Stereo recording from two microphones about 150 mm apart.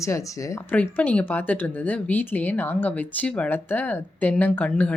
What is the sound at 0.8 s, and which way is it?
Speech, 10° left (ahead or behind).